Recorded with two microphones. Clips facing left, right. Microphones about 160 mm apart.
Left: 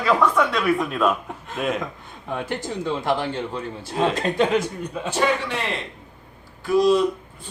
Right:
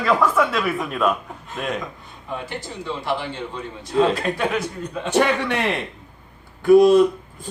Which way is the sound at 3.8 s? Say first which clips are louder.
Right 4 dB; 30° left (ahead or behind).